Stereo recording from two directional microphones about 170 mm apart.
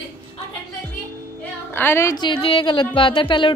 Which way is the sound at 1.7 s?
15° left (ahead or behind).